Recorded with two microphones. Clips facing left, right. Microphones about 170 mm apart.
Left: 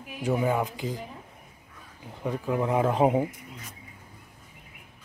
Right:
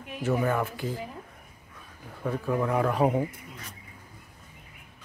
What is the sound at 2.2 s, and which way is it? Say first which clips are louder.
A man's voice: even; 15° left (ahead or behind).